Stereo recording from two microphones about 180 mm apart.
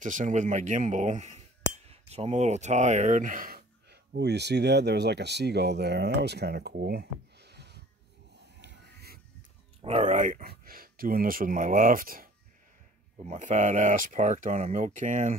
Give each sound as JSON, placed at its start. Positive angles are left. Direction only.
{"t": 0.0, "sound": "speech", "side_deg": -45}
{"t": 8.5, "sound": "a sound", "side_deg": -65}
{"t": 9.8, "sound": "speech", "side_deg": -35}